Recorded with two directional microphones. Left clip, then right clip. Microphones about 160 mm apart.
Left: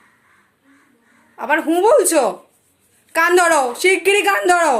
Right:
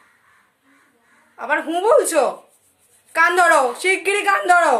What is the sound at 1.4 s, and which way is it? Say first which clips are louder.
Speech: left 4 dB; 15° left (ahead or behind).